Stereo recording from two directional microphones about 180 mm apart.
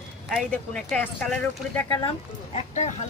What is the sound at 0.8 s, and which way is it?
Speech, 5° left (ahead or behind).